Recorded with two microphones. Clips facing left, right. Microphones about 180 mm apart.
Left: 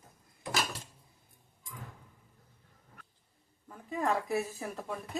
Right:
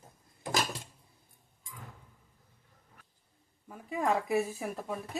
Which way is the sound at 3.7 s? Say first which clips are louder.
Right 1 dB; 10° right (ahead or behind).